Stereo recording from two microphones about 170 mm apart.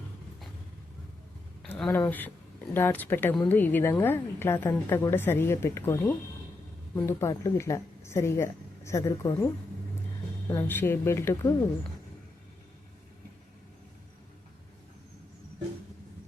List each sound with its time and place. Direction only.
1.6 s a sound: 10° left (ahead or behind)
2.7 s a woman's voice: 10° left (ahead or behind)
10.5 s a woman's voice: 10° left (ahead or behind)